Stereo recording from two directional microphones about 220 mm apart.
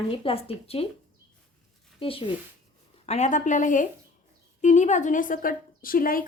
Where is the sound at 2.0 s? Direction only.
25° left (ahead or behind).